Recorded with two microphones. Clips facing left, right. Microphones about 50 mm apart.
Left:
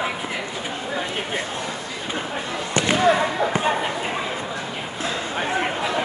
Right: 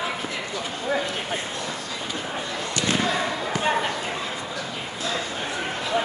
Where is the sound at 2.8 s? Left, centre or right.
Left.